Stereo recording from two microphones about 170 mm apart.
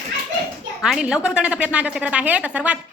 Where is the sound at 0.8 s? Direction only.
5° right (ahead or behind).